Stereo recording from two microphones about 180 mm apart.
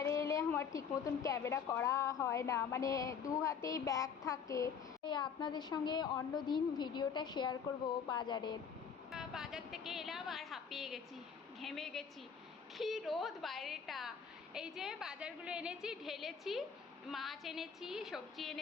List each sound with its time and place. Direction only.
0.0 s a woman's voice: 15° left (ahead or behind)
9.1 s a woman's voice: centre (ahead or behind)